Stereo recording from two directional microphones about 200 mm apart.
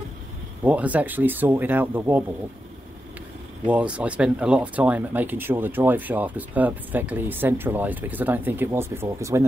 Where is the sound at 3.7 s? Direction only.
5° right (ahead or behind).